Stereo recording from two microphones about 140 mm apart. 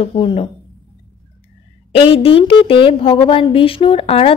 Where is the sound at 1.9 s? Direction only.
40° left (ahead or behind).